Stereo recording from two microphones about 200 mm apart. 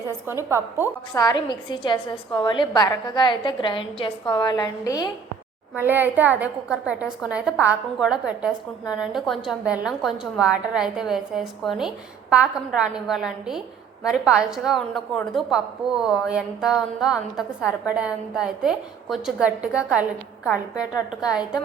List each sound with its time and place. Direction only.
0.1 s a woman's voice: 15° right (ahead or behind)
1.1 s a woman's voice: 20° left (ahead or behind)
5.7 s a woman's voice: 10° right (ahead or behind)